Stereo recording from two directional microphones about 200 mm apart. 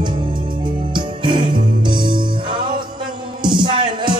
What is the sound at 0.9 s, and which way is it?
Music, 25° right (ahead or behind).